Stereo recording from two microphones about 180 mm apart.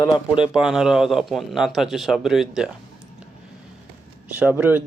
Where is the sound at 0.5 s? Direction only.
Centre (ahead or behind).